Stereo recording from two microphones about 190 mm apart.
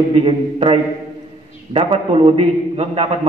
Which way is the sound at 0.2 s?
30° right (ahead or behind).